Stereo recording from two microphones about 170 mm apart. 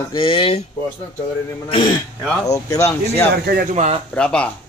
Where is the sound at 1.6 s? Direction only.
30° left (ahead or behind).